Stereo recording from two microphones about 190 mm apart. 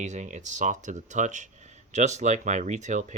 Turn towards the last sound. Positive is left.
turn(degrees=-40)  # may be behind; listen again after turning